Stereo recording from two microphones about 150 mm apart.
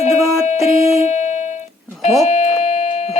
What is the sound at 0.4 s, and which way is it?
Music, 45° left (ahead or behind).